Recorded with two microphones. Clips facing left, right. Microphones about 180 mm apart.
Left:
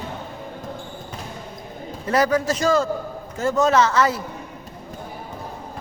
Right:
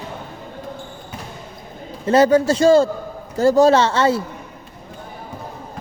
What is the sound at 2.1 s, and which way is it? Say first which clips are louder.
Speech: right 6 dB; 30° right (ahead or behind).